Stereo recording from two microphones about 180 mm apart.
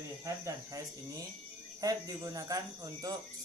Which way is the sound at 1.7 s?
20° right (ahead or behind).